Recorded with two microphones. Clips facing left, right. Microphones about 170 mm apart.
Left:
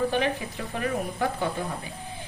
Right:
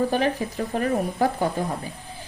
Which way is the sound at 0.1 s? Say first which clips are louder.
Right 3 dB; 40° right (ahead or behind).